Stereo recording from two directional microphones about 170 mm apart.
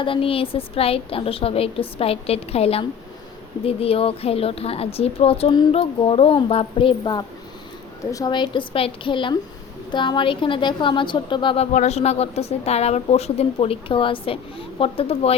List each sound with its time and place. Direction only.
0.0 s a woman's voice: 30° left (ahead or behind)